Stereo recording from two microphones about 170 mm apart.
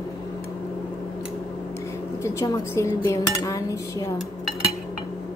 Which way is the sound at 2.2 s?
20° left (ahead or behind).